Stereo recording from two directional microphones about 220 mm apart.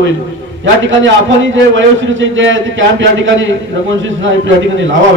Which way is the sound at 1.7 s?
60° right (ahead or behind).